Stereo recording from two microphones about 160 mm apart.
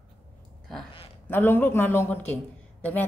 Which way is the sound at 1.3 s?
10° left (ahead or behind).